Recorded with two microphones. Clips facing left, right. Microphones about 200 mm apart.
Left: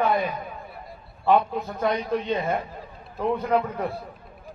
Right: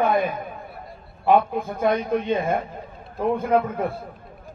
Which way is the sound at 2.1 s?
50° right (ahead or behind).